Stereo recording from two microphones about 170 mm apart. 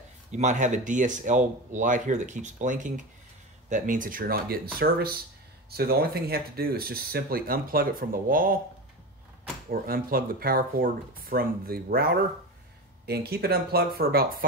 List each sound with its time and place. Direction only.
0.3 s speech: 45° right (ahead or behind)
9.7 s speech: 55° right (ahead or behind)